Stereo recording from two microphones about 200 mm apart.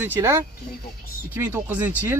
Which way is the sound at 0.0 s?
10° right (ahead or behind).